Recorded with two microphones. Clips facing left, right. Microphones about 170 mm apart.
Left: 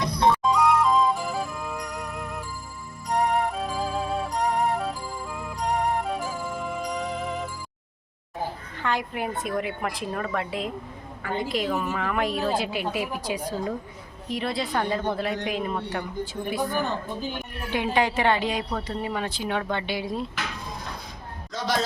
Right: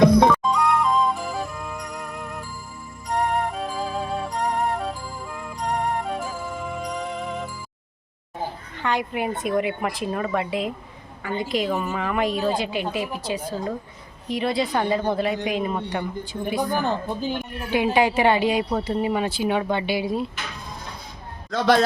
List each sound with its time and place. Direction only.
0.1 s music: 90° right
0.4 s music: centre (ahead or behind)
8.8 s a woman's voice: centre (ahead or behind)
14.3 s a woman's voice: centre (ahead or behind)
17.7 s speech: 10° right (ahead or behind)
21.5 s speech: 60° right (ahead or behind)